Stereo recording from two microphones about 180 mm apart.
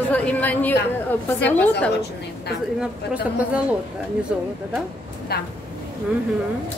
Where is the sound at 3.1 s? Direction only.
5° right (ahead or behind).